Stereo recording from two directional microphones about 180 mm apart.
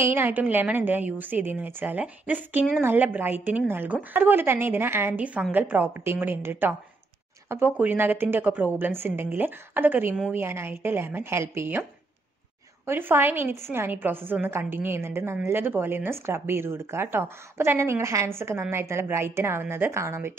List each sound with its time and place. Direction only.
0.0 s a woman's voice: 10° right (ahead or behind)
12.8 s a woman's voice: 10° right (ahead or behind)